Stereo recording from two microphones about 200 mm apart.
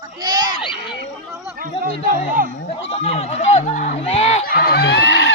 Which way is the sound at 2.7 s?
30° left (ahead or behind).